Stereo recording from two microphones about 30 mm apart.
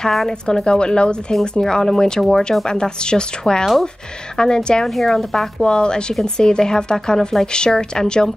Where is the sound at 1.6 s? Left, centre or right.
Left.